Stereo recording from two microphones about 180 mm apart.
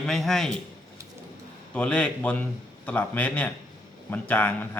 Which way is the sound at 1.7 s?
5° left (ahead or behind).